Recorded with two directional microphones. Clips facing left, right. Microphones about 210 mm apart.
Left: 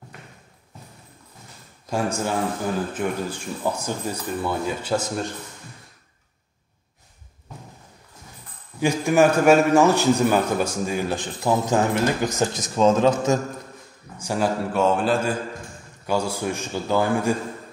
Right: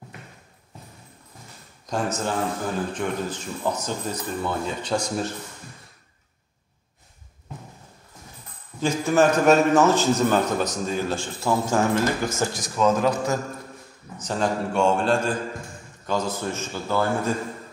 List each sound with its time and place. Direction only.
1.9 s a man's voice: 10° left (ahead or behind)
8.7 s a man's voice: 15° left (ahead or behind)
14.1 s a man's voice: 10° left (ahead or behind)